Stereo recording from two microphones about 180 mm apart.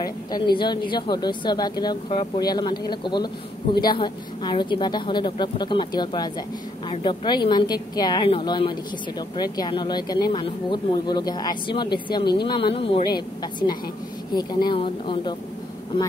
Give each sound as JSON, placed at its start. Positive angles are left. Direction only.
{"t": 0.6, "sound": "speech", "side_deg": 25}